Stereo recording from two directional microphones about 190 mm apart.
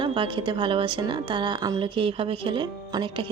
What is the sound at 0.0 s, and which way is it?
Speech, 25° right (ahead or behind).